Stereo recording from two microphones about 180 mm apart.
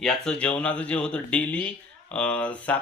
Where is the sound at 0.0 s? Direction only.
5° left (ahead or behind).